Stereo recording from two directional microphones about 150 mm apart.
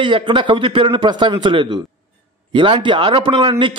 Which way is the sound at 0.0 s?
35° right (ahead or behind).